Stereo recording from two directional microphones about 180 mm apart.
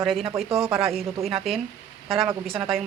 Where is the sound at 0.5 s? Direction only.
35° right (ahead or behind).